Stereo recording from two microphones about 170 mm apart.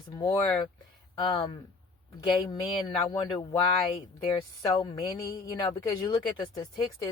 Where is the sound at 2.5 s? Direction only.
25° left (ahead or behind).